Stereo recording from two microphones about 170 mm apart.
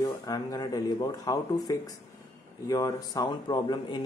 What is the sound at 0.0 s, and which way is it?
Speech, 20° left (ahead or behind).